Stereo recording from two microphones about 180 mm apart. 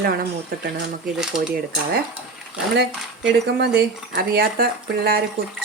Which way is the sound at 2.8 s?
70° right (ahead or behind).